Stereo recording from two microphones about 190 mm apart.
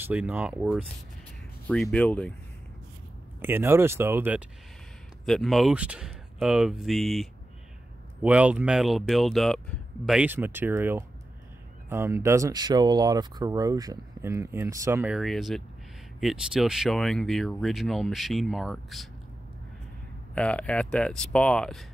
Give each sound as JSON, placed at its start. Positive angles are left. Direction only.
{"t": 0.0, "sound": "speech", "side_deg": -10}
{"t": 1.7, "sound": "speech", "side_deg": 5}
{"t": 3.3, "sound": "speech", "side_deg": -10}
{"t": 5.2, "sound": "speech", "side_deg": 0}
{"t": 15.1, "sound": "speech", "side_deg": 0}
{"t": 20.3, "sound": "speech", "side_deg": 5}